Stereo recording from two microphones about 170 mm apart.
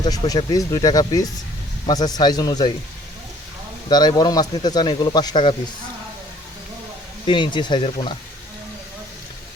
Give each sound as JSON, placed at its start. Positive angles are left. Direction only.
{"t": 0.0, "sound": "speech", "side_deg": 20}
{"t": 3.8, "sound": "speech", "side_deg": 25}
{"t": 7.3, "sound": "speech", "side_deg": 30}